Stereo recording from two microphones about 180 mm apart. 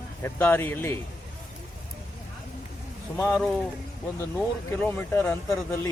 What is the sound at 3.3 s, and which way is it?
Speech, centre (ahead or behind).